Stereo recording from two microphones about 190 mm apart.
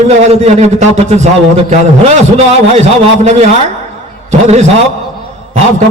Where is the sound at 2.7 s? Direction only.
35° right (ahead or behind).